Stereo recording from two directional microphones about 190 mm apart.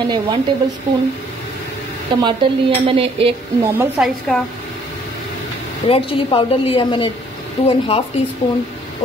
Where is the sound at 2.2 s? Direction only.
25° right (ahead or behind).